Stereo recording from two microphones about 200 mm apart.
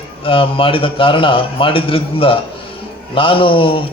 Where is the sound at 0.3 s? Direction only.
25° left (ahead or behind).